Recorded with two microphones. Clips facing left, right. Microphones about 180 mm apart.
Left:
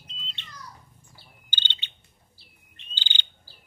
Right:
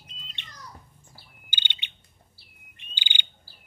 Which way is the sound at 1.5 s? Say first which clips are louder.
Left 1 dB; 10° right (ahead or behind).